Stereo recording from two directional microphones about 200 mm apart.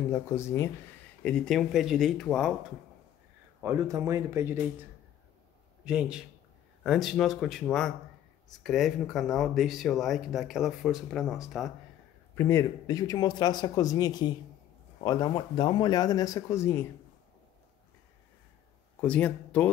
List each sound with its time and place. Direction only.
0.1 s speech: 15° left (ahead or behind)
3.6 s speech: 15° right (ahead or behind)
5.9 s speech: 5° right (ahead or behind)
12.4 s speech: 15° left (ahead or behind)
18.9 s speech: 5° left (ahead or behind)